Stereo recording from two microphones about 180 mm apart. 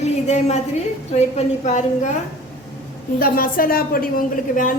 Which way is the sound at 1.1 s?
40° left (ahead or behind).